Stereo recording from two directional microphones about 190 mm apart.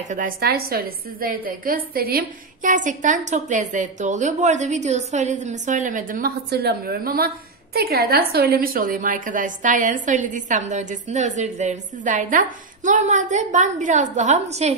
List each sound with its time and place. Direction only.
0.0 s a woman's voice: 45° right (ahead or behind)